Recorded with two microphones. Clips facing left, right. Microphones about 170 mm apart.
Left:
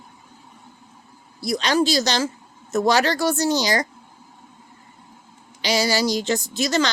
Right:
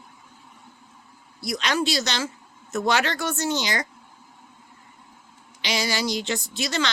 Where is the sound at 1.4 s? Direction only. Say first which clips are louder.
Left 5 dB; 35° left (ahead or behind).